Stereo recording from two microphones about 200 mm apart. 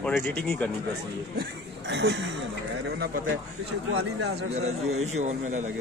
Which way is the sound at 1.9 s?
60° right (ahead or behind).